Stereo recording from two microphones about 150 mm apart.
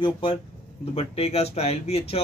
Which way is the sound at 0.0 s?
35° left (ahead or behind).